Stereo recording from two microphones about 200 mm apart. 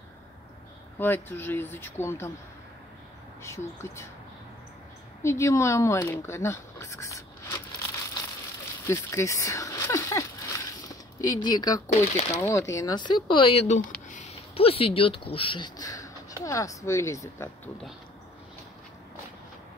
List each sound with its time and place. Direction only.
0.9 s speech: 10° left (ahead or behind)
3.4 s speech: 15° left (ahead or behind)
5.2 s speech: 15° left (ahead or behind)
8.8 s a sound: 15° left (ahead or behind)
11.1 s speech: 20° left (ahead or behind)
11.9 s speech: 35° left (ahead or behind)
12.4 s speech: 15° left (ahead or behind)